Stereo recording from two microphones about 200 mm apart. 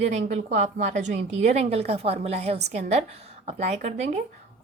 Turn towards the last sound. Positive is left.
turn(degrees=-35)  # may be behind; listen again after turning